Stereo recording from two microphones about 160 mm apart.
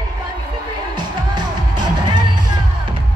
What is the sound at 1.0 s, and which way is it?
Music, 25° right (ahead or behind).